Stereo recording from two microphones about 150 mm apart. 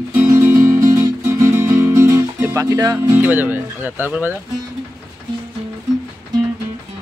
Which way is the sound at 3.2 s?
15° right (ahead or behind).